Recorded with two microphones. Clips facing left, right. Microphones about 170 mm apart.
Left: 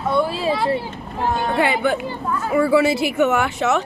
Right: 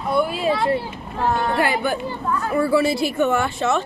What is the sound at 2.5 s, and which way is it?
Speech, 90° left.